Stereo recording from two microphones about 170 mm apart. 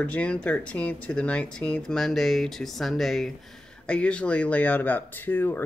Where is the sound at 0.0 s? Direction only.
10° left (ahead or behind).